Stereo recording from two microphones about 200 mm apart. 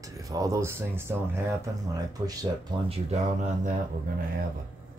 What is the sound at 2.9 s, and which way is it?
Speech, 35° right (ahead or behind).